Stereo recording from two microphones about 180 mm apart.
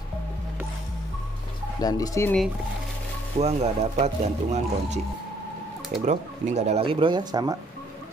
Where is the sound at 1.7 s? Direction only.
20° left (ahead or behind).